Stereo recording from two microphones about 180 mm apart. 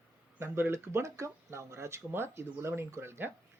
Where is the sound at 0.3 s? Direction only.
15° right (ahead or behind).